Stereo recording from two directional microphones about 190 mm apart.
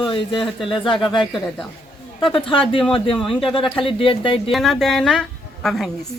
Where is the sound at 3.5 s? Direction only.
25° left (ahead or behind).